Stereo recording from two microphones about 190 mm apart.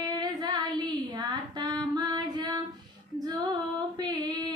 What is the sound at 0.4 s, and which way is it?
Female singing, 20° right (ahead or behind).